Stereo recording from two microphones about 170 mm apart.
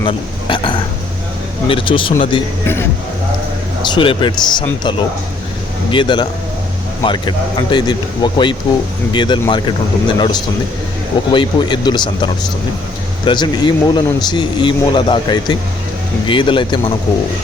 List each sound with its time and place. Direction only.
0.0 s burping: 30° left (ahead or behind)
1.6 s speech: 30° left (ahead or behind)
3.8 s speech: 30° left (ahead or behind)